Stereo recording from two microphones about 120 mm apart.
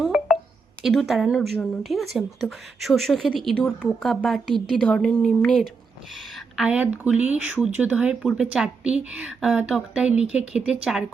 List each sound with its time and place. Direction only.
0.0 s a sound: 5° right (ahead or behind)
0.9 s speech: centre (ahead or behind)
6.6 s speech: 10° right (ahead or behind)